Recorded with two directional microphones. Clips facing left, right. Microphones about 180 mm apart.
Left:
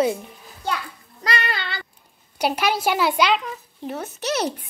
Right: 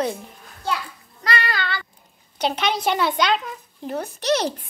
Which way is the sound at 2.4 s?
10° left (ahead or behind).